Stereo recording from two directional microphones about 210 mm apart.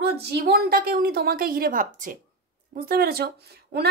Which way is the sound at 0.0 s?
50° right (ahead or behind).